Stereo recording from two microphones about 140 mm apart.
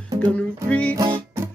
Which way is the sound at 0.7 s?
10° left (ahead or behind).